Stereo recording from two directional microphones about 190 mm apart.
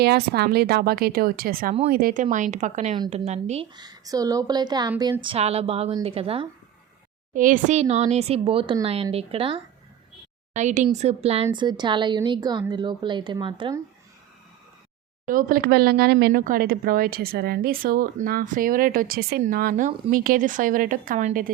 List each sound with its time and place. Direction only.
0.0 s a woman's voice: 55° right (ahead or behind)
2.3 s speech: 40° right (ahead or behind)
3.8 s a woman's voice: 20° right (ahead or behind)
7.3 s a woman's voice: 45° right (ahead or behind); by 13.8 s 25° right (ahead or behind)
15.3 s speech: 45° right (ahead or behind)